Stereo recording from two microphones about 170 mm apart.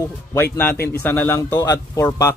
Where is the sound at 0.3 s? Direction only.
10° left (ahead or behind).